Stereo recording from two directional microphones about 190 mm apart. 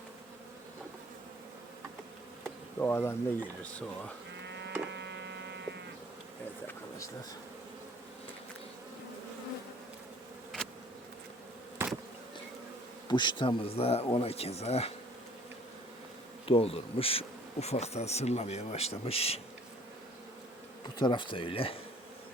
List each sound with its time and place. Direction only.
2.7 s speech: 10° left (ahead or behind)
4.4 s sheep: 70° right (ahead or behind)
4.9 s electric toothbrush: 70° right (ahead or behind)
11.8 s bee: 15° right (ahead or behind)
13.1 s bee: 25° left (ahead or behind)
16.5 s bee: 30° left (ahead or behind)
21.0 s speech: 25° left (ahead or behind)